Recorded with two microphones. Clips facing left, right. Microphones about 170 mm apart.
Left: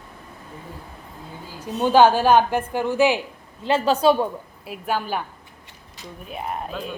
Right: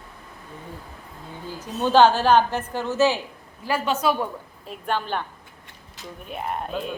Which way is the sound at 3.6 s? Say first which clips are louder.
Left 5 dB; 25° left (ahead or behind).